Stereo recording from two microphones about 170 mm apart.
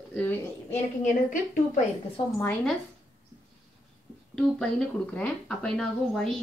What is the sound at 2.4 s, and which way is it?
Speech, 10° left (ahead or behind).